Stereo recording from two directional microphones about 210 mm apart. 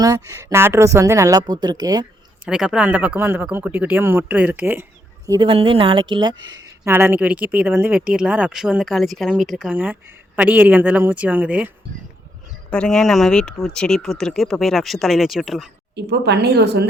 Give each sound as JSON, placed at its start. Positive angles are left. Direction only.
{"t": 0.0, "sound": "speech", "side_deg": -15}
{"t": 2.4, "sound": "speech", "side_deg": -5}
{"t": 12.7, "sound": "speech", "side_deg": 5}
{"t": 16.0, "sound": "speech", "side_deg": -50}